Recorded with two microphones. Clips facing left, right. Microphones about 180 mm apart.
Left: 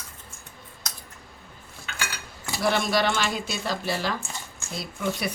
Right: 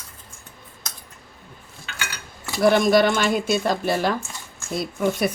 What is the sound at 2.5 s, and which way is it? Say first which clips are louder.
Speech: right 8 dB; 45° right (ahead or behind).